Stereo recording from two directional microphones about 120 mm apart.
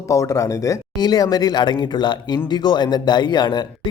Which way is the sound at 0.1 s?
25° left (ahead or behind).